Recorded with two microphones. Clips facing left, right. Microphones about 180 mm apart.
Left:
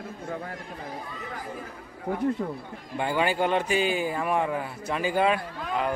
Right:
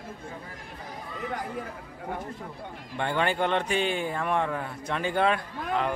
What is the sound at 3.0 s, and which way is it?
Speech, 5° left (ahead or behind).